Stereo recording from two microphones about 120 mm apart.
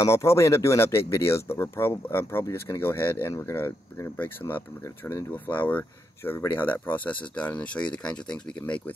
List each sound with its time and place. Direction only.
0.0 s speech: 25° left (ahead or behind)